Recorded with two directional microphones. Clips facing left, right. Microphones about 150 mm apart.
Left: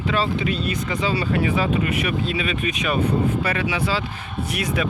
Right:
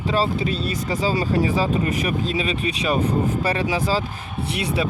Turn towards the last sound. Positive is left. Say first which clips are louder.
# even
turn(degrees=-30)  # may be behind; listen again after turning